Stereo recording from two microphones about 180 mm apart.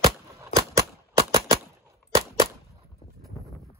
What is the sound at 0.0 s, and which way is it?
Gunshot, 15° right (ahead or behind).